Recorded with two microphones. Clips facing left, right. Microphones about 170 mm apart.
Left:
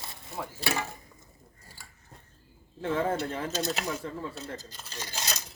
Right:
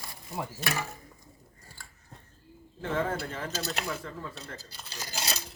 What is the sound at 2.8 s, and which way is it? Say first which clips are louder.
Speech: left 2 dB; 30° left (ahead or behind).